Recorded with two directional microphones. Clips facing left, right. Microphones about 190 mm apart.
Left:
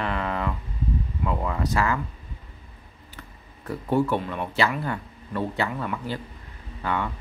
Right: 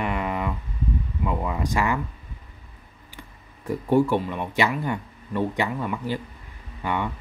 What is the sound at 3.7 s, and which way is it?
Speech, 15° right (ahead or behind).